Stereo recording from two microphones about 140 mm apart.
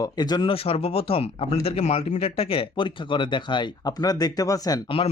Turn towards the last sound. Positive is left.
turn(degrees=25)  # may be behind; listen again after turning